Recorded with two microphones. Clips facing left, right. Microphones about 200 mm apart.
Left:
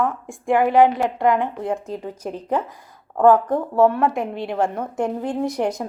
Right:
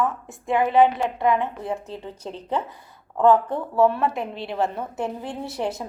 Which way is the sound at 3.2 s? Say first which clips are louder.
Left 3 dB; 45° left (ahead or behind).